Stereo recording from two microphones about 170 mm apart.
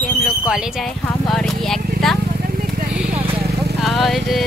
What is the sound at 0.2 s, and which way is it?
Speech, centre (ahead or behind).